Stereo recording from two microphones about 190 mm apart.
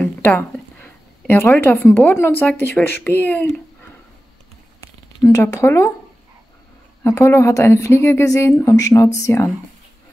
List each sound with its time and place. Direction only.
0.0 s a sound: 5° left (ahead or behind)
2.1 s a woman's voice: 10° left (ahead or behind)
5.2 s a woman's voice: 15° left (ahead or behind)
7.0 s a woman's voice: 15° left (ahead or behind)